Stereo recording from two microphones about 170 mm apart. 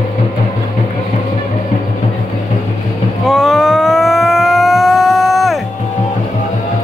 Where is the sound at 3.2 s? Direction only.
Centre (ahead or behind).